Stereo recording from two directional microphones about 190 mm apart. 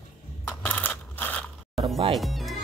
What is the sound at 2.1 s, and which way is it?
Music, centre (ahead or behind).